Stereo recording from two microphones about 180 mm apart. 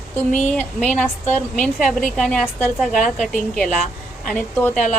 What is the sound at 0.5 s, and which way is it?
A woman's voice, 10° left (ahead or behind).